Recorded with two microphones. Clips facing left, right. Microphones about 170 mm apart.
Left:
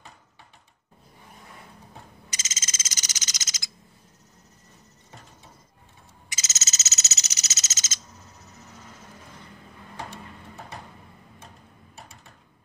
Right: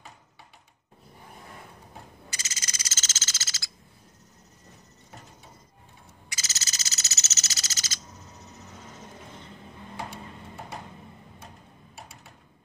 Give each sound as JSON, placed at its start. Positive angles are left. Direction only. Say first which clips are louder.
{"t": 2.2, "sound": "frog", "louder": "even", "side_deg": 20}
{"t": 6.2, "sound": "frog", "louder": "left 1 dB", "side_deg": 20}